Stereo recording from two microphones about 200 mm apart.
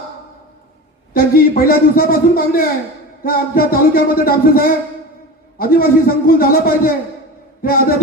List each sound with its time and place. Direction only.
1.1 s a man's voice: 45° left (ahead or behind)